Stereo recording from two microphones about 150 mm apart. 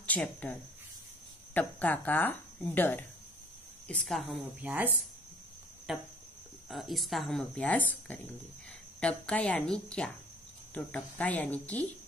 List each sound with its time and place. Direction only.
0.0 s speech: 10° left (ahead or behind)
4.6 s speech: 10° right (ahead or behind); by 11.8 s 10° left (ahead or behind)